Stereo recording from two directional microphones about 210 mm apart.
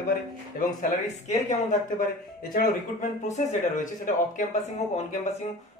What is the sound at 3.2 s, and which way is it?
Speech, 35° left (ahead or behind).